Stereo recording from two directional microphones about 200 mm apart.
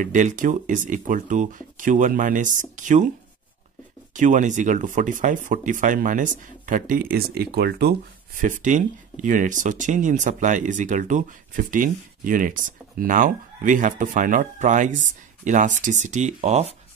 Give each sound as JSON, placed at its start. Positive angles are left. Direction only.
{"t": 0.0, "sound": "speech", "side_deg": -40}
{"t": 4.1, "sound": "speech", "side_deg": -40}
{"t": 8.4, "sound": "speech", "side_deg": -40}